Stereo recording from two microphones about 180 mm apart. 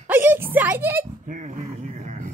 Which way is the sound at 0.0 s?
10° right (ahead or behind).